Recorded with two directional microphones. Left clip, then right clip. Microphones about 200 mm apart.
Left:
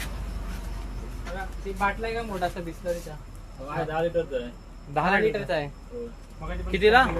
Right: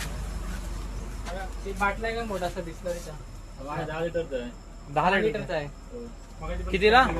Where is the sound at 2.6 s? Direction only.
55° left (ahead or behind).